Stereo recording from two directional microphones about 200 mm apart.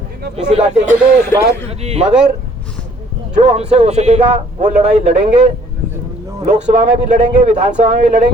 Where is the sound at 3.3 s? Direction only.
35° right (ahead or behind).